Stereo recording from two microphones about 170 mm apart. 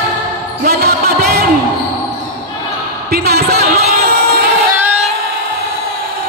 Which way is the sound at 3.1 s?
65° right (ahead or behind).